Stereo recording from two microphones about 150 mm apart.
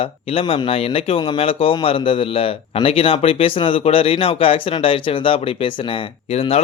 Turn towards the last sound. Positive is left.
turn(degrees=40)  # may be behind; listen again after turning